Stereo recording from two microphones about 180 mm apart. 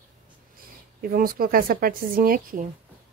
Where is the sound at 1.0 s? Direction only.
55° right (ahead or behind).